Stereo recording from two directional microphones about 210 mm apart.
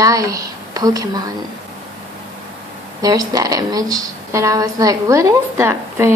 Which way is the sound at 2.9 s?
15° right (ahead or behind).